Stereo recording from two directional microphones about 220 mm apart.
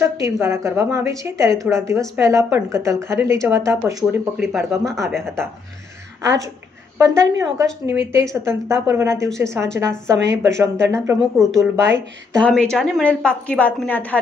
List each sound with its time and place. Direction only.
0.0 s a woman's voice: 10° right (ahead or behind)
4.0 s a woman's voice: centre (ahead or behind)
5.2 s a woman's voice: 10° right (ahead or behind)
7.0 s a woman's voice: 15° right (ahead or behind)
10.1 s a woman's voice: 55° right (ahead or behind)
10.5 s a woman's voice: 15° right (ahead or behind)
12.4 s a woman's voice: 5° left (ahead or behind)